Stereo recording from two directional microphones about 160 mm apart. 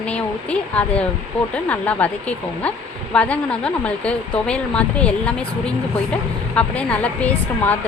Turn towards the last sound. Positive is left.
turn(degrees=10)  # may be behind; listen again after turning